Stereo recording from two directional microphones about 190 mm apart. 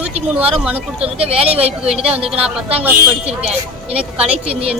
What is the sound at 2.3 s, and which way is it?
Speech, 30° right (ahead or behind).